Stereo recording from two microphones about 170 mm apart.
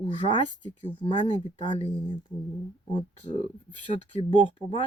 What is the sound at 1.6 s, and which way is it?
Speech, 35° left (ahead or behind).